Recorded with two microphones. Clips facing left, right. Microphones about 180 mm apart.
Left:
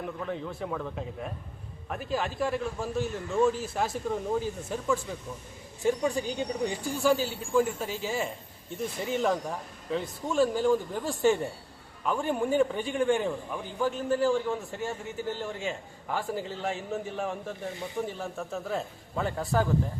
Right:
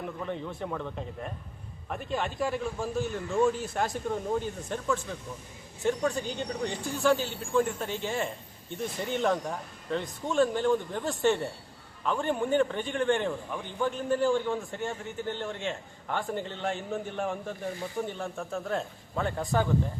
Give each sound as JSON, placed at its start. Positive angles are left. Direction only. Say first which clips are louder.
{"t": 0.0, "sound": "a man's voice", "louder": "left 1 dB", "side_deg": 0}